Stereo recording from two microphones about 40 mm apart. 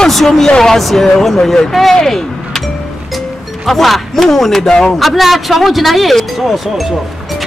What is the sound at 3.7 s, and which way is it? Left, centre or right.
Speech, centre.